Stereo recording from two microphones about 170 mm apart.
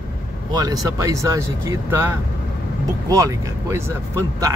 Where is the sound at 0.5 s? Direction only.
20° right (ahead or behind).